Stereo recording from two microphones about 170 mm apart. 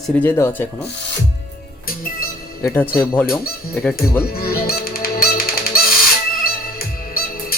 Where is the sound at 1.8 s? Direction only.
60° left (ahead or behind).